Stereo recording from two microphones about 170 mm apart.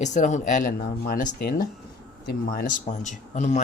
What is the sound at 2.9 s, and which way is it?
Speech, 45° left (ahead or behind).